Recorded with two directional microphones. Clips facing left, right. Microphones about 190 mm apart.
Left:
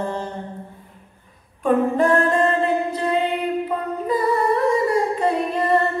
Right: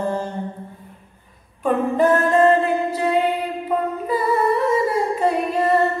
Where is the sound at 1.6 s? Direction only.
5° right (ahead or behind).